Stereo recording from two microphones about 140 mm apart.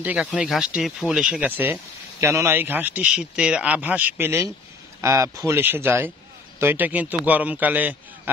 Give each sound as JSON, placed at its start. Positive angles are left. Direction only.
{"t": 0.0, "sound": "speech", "side_deg": -10}